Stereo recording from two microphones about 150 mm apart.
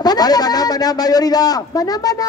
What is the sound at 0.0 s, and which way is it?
A man's voice, 25° left (ahead or behind).